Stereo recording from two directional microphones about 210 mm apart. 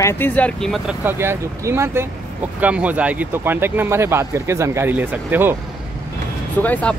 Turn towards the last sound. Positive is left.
turn(degrees=5)  # may be behind; listen again after turning